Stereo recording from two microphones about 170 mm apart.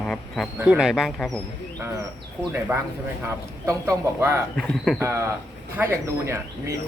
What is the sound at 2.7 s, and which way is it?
Speech, 10° right (ahead or behind).